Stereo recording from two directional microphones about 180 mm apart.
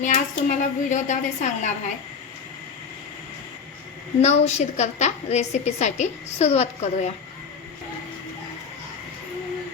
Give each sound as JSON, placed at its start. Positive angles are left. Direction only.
{"t": 0.0, "sound": "a woman's voice", "side_deg": 45}
{"t": 4.2, "sound": "a woman's voice", "side_deg": 40}